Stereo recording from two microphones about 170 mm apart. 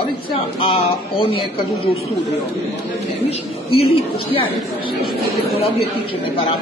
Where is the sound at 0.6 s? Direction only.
35° left (ahead or behind).